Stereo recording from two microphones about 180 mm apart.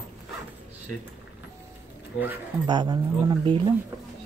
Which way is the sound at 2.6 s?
25° right (ahead or behind).